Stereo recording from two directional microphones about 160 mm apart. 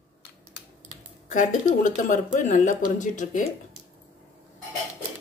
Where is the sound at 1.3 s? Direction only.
50° left (ahead or behind).